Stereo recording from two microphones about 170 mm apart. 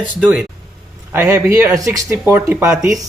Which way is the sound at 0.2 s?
10° right (ahead or behind).